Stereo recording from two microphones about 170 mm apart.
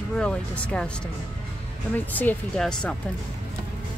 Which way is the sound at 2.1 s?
10° left (ahead or behind).